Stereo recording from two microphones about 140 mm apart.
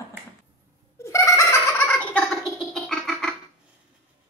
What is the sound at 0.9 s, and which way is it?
Chicken, 20° left (ahead or behind).